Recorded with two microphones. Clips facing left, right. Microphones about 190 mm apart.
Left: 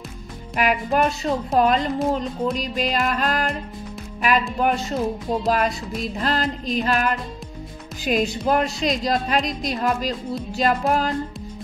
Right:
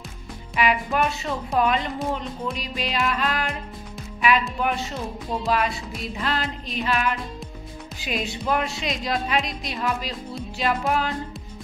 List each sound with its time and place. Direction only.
0.6 s a woman's voice: 45° left (ahead or behind)
2.6 s music: 45° left (ahead or behind)
4.2 s a woman's voice: 40° left (ahead or behind)
5.4 s music: 45° left (ahead or behind)
6.2 s a woman's voice: 40° left (ahead or behind)